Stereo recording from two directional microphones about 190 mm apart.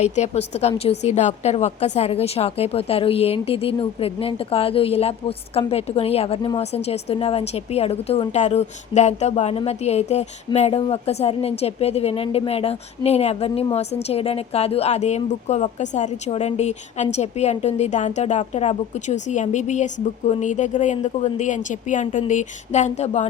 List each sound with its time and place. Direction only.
0.0 s a woman's voice: 35° left (ahead or behind)